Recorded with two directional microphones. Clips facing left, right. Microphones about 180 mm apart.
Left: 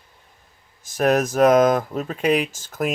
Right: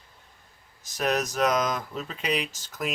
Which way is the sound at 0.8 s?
50° left (ahead or behind).